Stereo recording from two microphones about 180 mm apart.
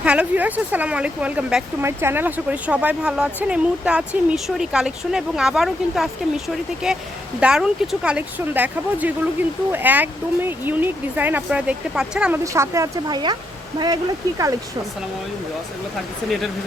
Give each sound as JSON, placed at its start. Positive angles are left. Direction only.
{"t": 0.0, "sound": "speech", "side_deg": -5}
{"t": 12.5, "sound": "speech", "side_deg": -15}